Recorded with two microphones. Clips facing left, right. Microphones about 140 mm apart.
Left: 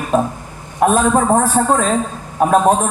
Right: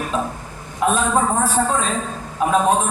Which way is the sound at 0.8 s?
45° left (ahead or behind).